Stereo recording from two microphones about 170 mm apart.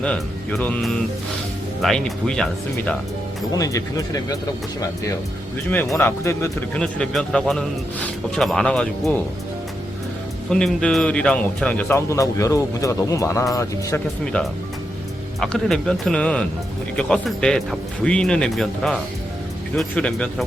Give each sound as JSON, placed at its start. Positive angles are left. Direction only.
{"t": 0.0, "sound": "speech", "side_deg": 5}
{"t": 3.5, "sound": "speech", "side_deg": 20}
{"t": 5.6, "sound": "speech", "side_deg": 10}
{"t": 10.5, "sound": "speech", "side_deg": 5}
{"t": 15.4, "sound": "speech", "side_deg": 0}